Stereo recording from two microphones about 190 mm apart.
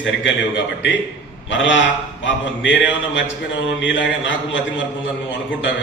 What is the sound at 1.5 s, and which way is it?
A man's voice, 75° left (ahead or behind).